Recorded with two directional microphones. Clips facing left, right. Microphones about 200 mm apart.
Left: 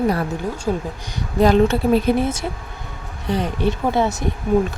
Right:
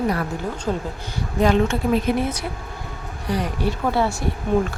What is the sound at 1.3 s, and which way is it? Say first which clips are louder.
Speech: left 4 dB; 35° left (ahead or behind).